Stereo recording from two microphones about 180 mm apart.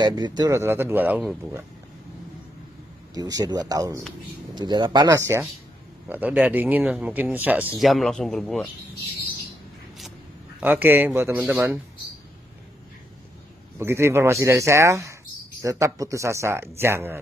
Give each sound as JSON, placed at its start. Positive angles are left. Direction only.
{"t": 0.0, "sound": "speech", "side_deg": -25}
{"t": 3.2, "sound": "speech", "side_deg": -20}
{"t": 10.6, "sound": "speech", "side_deg": -10}
{"t": 13.7, "sound": "speech", "side_deg": -15}